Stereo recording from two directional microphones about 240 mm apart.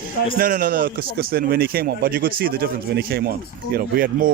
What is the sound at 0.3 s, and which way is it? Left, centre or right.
A man's voice, right.